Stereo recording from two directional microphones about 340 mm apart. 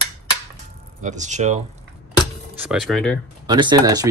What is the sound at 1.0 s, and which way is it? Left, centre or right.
Speech, right.